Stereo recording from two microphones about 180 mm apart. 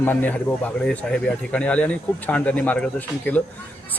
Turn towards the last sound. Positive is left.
turn(degrees=10)  # may be behind; listen again after turning